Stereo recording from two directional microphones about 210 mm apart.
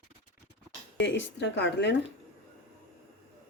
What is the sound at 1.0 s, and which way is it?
Speech, 60° left (ahead or behind).